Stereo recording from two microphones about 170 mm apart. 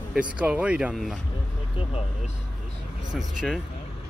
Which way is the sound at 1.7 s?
35° left (ahead or behind).